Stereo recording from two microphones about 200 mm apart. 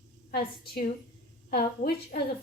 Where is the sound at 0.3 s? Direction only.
50° left (ahead or behind).